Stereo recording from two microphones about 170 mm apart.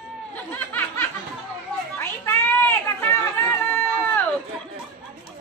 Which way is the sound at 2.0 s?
15° left (ahead or behind).